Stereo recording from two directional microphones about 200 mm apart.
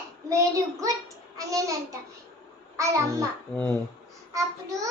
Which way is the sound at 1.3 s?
15° right (ahead or behind).